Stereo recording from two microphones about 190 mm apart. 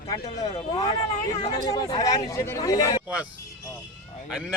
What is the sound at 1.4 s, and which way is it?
Speech, 20° left (ahead or behind).